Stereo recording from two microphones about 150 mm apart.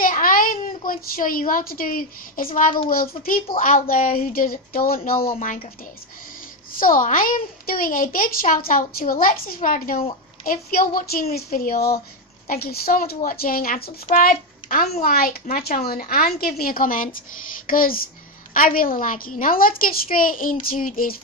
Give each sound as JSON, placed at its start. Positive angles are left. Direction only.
{"t": 0.0, "sound": "a sound", "side_deg": 70}
{"t": 2.5, "sound": "a child's voice", "side_deg": 65}
{"t": 6.8, "sound": "a child's voice", "side_deg": 65}
{"t": 12.4, "sound": "a woman's voice", "side_deg": 85}
{"t": 14.1, "sound": "a child's voice", "side_deg": 70}